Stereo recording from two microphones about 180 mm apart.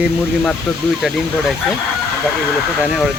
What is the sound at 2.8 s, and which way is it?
Speech, 5° right (ahead or behind).